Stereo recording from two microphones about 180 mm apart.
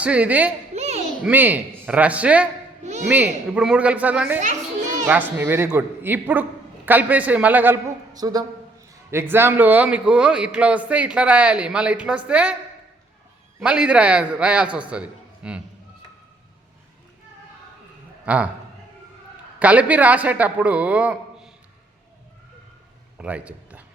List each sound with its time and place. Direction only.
0.0 s a man's voice: 5° right (ahead or behind)
0.7 s a sound: 40° right (ahead or behind)
1.2 s a man's voice: 10° right (ahead or behind)
4.4 s children playing: 40° right (ahead or behind)
5.4 s a man's voice: 10° right (ahead or behind)
8.1 s a man's voice: 20° right (ahead or behind)
13.6 s a man's voice: 5° right (ahead or behind)
18.3 s a man's voice: 10° right (ahead or behind)
19.5 s a man's voice: 10° right (ahead or behind)
23.1 s a sound: 5° right (ahead or behind)